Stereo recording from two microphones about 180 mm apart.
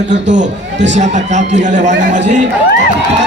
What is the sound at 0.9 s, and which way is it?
A man's voice, 40° right (ahead or behind).